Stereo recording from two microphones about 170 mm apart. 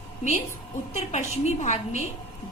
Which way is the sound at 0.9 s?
40° left (ahead or behind).